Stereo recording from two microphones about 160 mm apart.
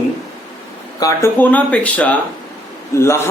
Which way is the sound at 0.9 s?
20° left (ahead or behind).